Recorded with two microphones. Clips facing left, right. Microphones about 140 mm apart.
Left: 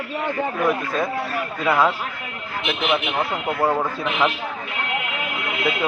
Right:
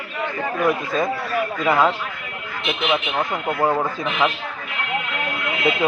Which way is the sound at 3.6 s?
15° right (ahead or behind).